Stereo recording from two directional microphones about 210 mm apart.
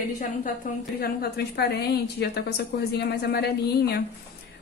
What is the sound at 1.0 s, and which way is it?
A woman's voice, 50° left (ahead or behind).